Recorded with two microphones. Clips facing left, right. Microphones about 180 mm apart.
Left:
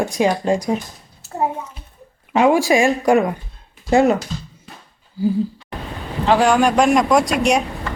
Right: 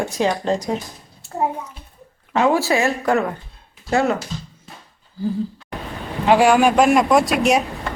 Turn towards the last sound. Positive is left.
turn(degrees=-5)  # may be behind; listen again after turning